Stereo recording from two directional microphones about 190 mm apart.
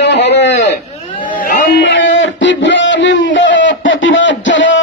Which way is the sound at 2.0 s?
80° left.